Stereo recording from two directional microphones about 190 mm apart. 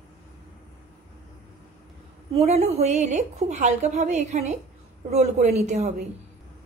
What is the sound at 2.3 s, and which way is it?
A woman's voice, 35° right (ahead or behind).